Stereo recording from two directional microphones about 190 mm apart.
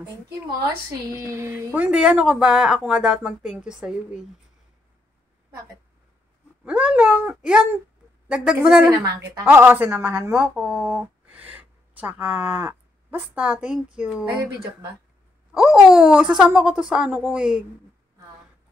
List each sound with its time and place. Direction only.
1.2 s speech: 15° right (ahead or behind)
6.6 s speech: 5° right (ahead or behind)
8.9 s speech: 20° right (ahead or behind)
9.5 s a woman's voice: 10° right (ahead or behind)
15.5 s speech: 5° right (ahead or behind)